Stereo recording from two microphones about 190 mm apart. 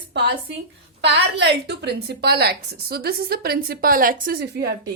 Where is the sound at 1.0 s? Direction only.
65° right (ahead or behind).